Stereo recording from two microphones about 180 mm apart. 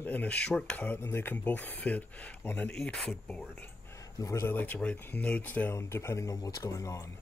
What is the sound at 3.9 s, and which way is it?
Speech, 20° left (ahead or behind).